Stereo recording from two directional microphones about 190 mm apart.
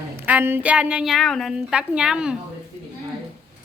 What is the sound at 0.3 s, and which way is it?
A woman's voice, 10° right (ahead or behind).